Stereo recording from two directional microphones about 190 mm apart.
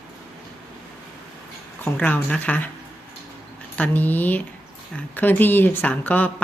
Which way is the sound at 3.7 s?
10° left (ahead or behind).